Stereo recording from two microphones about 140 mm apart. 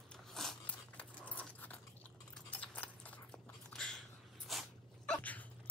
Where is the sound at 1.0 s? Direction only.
10° left (ahead or behind).